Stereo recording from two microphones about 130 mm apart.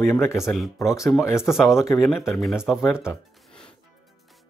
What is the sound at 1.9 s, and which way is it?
Speech, centre (ahead or behind).